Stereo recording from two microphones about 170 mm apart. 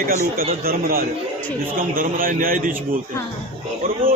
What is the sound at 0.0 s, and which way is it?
Speech, 55° right (ahead or behind).